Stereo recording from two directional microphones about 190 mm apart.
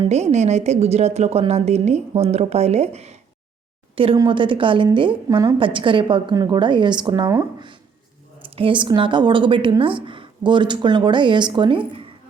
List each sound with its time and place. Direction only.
0.0 s a woman's voice: 35° right (ahead or behind)